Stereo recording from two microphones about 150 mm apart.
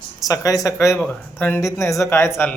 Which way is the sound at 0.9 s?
10° left (ahead or behind).